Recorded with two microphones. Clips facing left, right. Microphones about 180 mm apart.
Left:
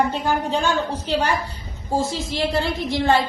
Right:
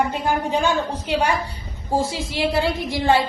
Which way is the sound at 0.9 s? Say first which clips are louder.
Right 1 dB; 35° left (ahead or behind).